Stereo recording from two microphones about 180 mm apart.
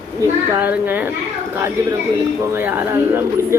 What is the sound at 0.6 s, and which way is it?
Speech, 10° right (ahead or behind).